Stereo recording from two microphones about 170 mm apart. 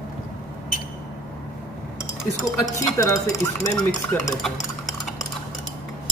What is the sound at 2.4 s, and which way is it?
Speech, 20° left (ahead or behind).